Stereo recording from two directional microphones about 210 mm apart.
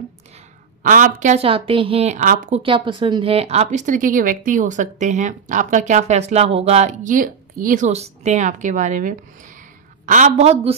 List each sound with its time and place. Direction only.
0.8 s speech: 40° right (ahead or behind)
2.6 s speech: 25° right (ahead or behind)